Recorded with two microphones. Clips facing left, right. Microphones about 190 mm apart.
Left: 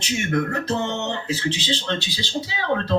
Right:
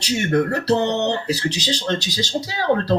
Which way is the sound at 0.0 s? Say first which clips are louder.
Right 4 dB; 35° right (ahead or behind).